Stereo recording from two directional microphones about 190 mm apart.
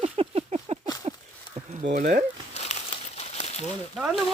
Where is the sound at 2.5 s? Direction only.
35° left (ahead or behind).